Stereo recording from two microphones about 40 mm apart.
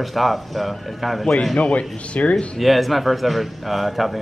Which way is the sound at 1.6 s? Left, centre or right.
Left.